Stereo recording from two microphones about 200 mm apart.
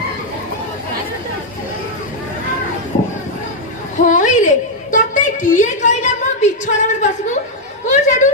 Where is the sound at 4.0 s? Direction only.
40° left (ahead or behind).